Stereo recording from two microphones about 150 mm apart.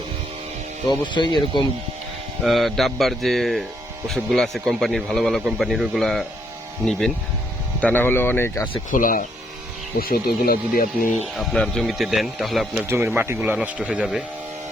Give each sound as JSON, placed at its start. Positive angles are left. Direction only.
{"t": 0.9, "sound": "speech", "side_deg": 30}
{"t": 2.4, "sound": "speech", "side_deg": 0}
{"t": 7.8, "sound": "speech", "side_deg": 10}
{"t": 8.9, "sound": "speech", "side_deg": 65}
{"t": 10.0, "sound": "speech", "side_deg": 90}
{"t": 11.3, "sound": "speech", "side_deg": 5}
{"t": 13.1, "sound": "speech", "side_deg": -15}